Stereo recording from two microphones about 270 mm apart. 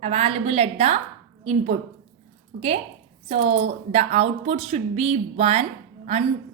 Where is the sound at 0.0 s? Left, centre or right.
Right.